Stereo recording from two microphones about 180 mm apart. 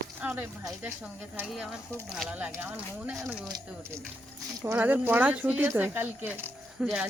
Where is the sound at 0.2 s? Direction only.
10° right (ahead or behind).